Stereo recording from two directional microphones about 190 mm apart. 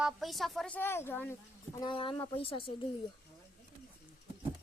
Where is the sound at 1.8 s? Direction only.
25° left (ahead or behind).